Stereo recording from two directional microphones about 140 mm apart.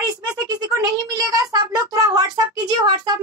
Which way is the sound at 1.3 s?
25° right (ahead or behind).